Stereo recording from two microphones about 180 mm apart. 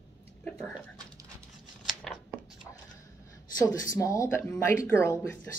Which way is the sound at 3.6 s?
20° left (ahead or behind).